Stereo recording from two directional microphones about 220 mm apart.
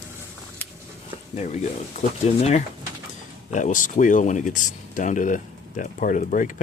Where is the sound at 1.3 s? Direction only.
30° left (ahead or behind).